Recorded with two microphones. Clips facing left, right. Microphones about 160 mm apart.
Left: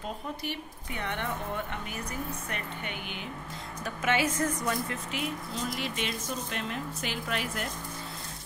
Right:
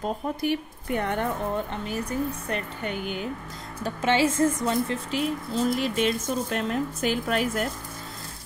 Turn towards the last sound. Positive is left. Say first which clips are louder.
# right 8 dB
turn(degrees=-45)  # may be behind; listen again after turning